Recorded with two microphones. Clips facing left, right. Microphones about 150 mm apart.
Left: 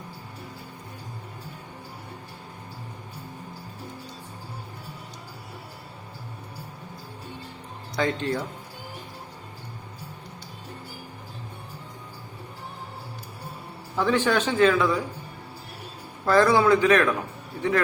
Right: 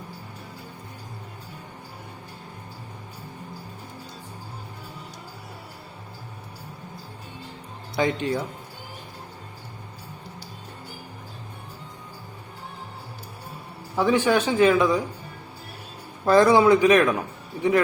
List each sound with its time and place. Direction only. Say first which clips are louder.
7.9 s speech: right 2 dB; 15° right (ahead or behind)
13.9 s speech: right 2 dB; 10° right (ahead or behind)
16.2 s speech: right 3 dB; 20° right (ahead or behind)